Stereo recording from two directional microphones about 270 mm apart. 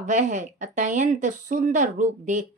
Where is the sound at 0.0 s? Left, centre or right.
Right.